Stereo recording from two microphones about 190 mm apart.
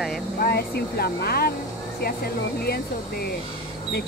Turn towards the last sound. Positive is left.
turn(degrees=55)  # may be behind; listen again after turning